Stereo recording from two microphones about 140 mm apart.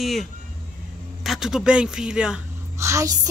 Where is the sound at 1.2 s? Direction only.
Centre (ahead or behind).